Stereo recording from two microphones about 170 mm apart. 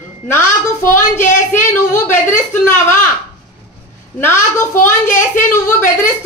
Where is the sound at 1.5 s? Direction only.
10° left (ahead or behind).